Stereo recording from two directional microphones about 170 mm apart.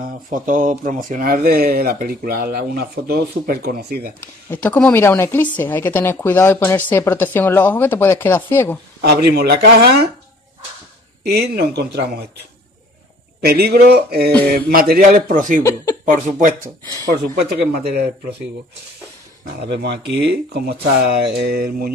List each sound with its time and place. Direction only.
0.0 s speech: 50° right (ahead or behind)
4.5 s speech: 10° left (ahead or behind)
9.0 s speech: 70° right (ahead or behind)
11.2 s speech: 70° right (ahead or behind)
13.4 s speech: 65° right (ahead or behind); by 15.6 s 50° right (ahead or behind)
15.6 s speech: 20° left (ahead or behind)
16.3 s speech: 50° right (ahead or behind)
17.5 s speech: 70° right (ahead or behind)
19.6 s speech: 80° right; by 21.9 s 60° right (ahead or behind)